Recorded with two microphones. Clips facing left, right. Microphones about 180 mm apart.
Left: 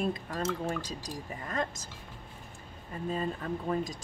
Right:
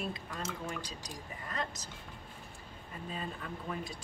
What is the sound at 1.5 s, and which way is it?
Speech, 50° left (ahead or behind).